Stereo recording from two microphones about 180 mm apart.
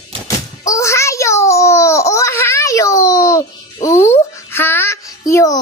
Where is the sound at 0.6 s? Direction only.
15° left (ahead or behind).